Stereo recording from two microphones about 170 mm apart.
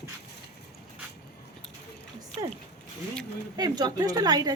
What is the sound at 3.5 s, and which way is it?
A woman's voice, 25° right (ahead or behind).